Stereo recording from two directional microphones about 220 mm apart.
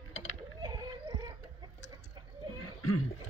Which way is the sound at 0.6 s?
20° right (ahead or behind).